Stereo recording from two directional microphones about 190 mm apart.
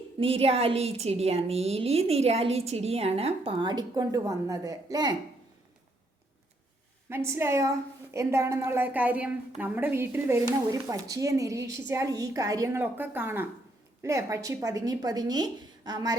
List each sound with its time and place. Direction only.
0.2 s a woman's voice: 30° right (ahead or behind)
7.1 s speech: 15° right (ahead or behind)